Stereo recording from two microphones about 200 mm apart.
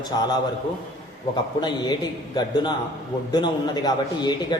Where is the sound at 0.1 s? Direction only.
20° left (ahead or behind).